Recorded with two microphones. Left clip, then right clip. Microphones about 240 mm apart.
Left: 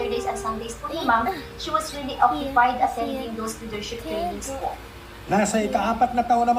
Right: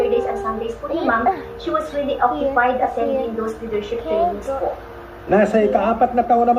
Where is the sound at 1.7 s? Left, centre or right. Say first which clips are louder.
Right 6 dB; left.